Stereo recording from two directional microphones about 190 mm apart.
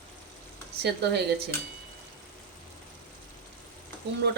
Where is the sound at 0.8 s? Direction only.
60° right (ahead or behind).